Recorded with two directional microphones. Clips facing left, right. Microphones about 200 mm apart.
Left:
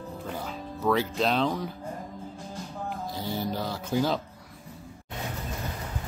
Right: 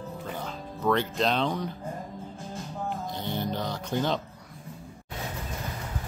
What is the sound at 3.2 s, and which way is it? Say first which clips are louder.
Speech: left 2 dB; 5° left (ahead or behind).